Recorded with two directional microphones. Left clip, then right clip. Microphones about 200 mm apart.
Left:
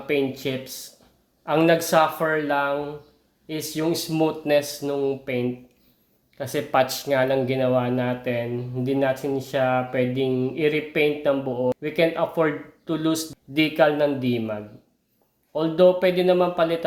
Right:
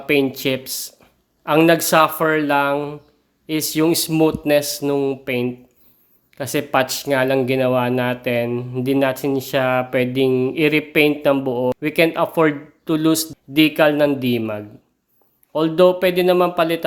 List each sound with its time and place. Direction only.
0.0 s speech: 40° right (ahead or behind)